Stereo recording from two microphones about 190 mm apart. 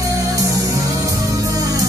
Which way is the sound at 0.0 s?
15° right (ahead or behind).